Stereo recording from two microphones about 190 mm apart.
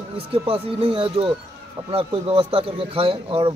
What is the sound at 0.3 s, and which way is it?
A man's voice, 30° right (ahead or behind).